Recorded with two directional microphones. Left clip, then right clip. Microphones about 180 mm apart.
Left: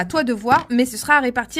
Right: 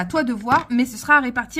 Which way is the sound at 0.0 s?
40° left (ahead or behind).